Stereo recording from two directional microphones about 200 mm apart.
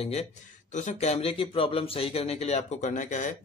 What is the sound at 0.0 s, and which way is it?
Speech, 30° left (ahead or behind).